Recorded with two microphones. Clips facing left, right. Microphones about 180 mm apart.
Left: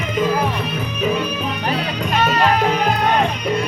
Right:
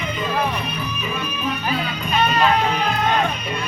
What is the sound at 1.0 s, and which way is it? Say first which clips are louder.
Music: left 10 dB; 80° left.